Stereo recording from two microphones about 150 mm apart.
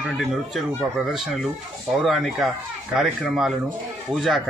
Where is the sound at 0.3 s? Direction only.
Centre (ahead or behind).